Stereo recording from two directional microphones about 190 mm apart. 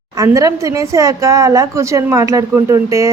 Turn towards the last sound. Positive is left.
turn(degrees=-15)  # may be behind; listen again after turning